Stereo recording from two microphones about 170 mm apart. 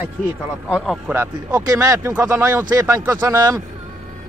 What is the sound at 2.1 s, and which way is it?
Speech, 10° right (ahead or behind).